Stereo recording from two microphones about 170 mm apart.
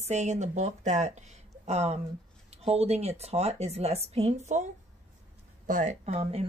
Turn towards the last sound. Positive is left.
turn(degrees=-40)  # may be behind; listen again after turning